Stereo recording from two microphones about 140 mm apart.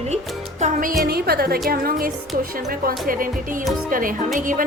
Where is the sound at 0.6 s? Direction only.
75° right (ahead or behind).